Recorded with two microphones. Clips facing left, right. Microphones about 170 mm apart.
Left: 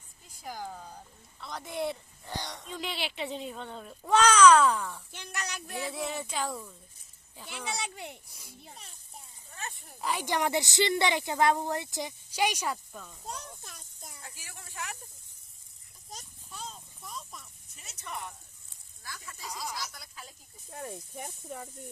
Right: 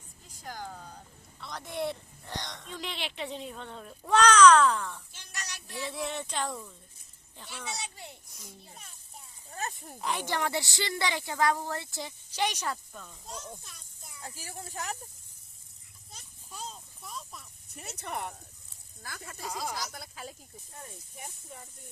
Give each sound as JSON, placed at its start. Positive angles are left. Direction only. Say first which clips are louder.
{"t": 0.4, "sound": "speech", "louder": "left 1 dB", "side_deg": 5}
{"t": 5.1, "sound": "speech", "louder": "left 6 dB", "side_deg": 55}
{"t": 5.9, "sound": "speech", "louder": "right 2 dB", "side_deg": 0}
{"t": 7.8, "sound": "speech", "louder": "left 4 dB", "side_deg": 60}
{"t": 9.5, "sound": "a sound", "louder": "right 6 dB", "side_deg": -40}
{"t": 10.0, "sound": "speech", "louder": "left 1 dB", "side_deg": 0}
{"t": 10.2, "sound": "speech", "louder": "left 5 dB", "side_deg": 15}
{"t": 13.2, "sound": "children playing", "louder": "even", "side_deg": 55}
{"t": 14.2, "sound": "speech", "louder": "right 11 dB", "side_deg": -40}
{"t": 17.0, "sound": "a sound", "louder": "even", "side_deg": 0}
{"t": 17.7, "sound": "speech", "louder": "right 4 dB", "side_deg": -60}
{"t": 21.2, "sound": "speech", "louder": "left 4 dB", "side_deg": 55}